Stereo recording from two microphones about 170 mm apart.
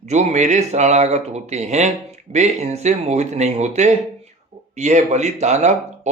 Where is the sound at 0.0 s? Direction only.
40° right (ahead or behind).